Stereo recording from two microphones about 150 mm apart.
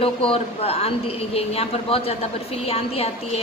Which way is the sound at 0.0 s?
40° left (ahead or behind).